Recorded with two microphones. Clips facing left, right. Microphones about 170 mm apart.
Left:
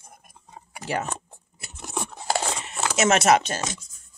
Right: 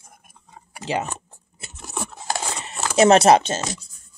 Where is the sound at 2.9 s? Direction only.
35° right (ahead or behind).